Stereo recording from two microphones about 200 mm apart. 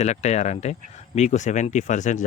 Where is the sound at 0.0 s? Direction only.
35° left (ahead or behind).